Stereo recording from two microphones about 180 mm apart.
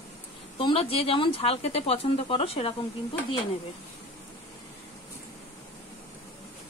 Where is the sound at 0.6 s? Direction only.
30° left (ahead or behind).